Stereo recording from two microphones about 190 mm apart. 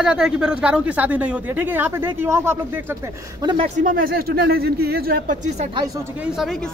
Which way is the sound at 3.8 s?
50° right (ahead or behind).